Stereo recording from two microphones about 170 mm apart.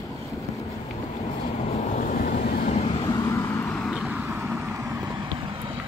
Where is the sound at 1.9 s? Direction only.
50° left (ahead or behind).